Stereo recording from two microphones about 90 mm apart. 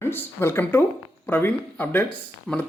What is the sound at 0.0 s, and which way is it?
Speech, 25° left (ahead or behind).